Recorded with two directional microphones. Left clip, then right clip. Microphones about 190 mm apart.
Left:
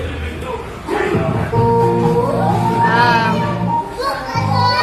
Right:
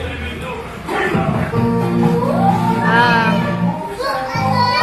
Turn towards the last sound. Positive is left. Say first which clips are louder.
# even
turn(degrees=0)  # may be behind; listen again after turning